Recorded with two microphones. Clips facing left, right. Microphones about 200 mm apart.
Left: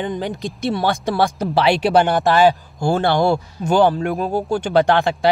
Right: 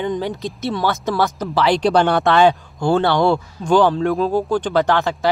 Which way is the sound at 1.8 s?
5° left (ahead or behind).